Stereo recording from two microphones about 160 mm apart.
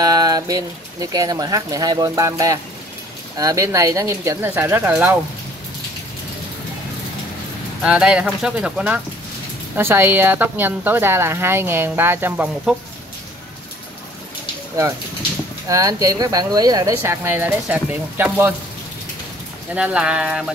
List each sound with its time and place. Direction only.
0.0 s a sound: 25° right (ahead or behind)
1.1 s a woman's voice: 25° right (ahead or behind)
7.8 s a woman's voice: 5° right (ahead or behind)
15.7 s speech: 20° right (ahead or behind)
19.7 s a woman's voice: 5° right (ahead or behind)